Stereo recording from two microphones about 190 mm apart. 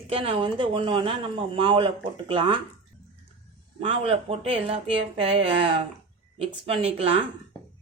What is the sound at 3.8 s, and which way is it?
A woman's voice, 30° right (ahead or behind).